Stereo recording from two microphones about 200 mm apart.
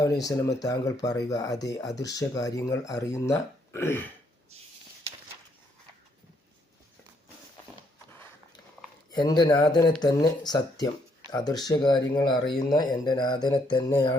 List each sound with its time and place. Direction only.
0.0 s speech: 15° left (ahead or behind)
9.1 s speech: 20° left (ahead or behind)